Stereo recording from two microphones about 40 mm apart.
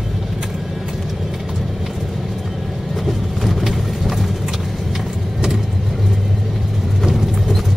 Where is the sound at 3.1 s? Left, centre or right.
Centre.